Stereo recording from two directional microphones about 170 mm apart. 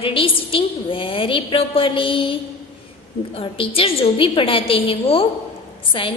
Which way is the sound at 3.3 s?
35° left (ahead or behind).